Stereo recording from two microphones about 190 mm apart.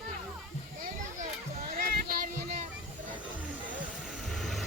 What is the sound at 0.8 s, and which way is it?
Children playing, 40° right (ahead or behind).